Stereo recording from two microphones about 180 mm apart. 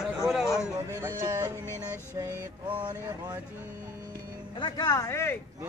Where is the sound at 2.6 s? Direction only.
25° right (ahead or behind).